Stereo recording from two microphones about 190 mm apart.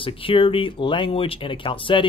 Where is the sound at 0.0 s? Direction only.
30° left (ahead or behind).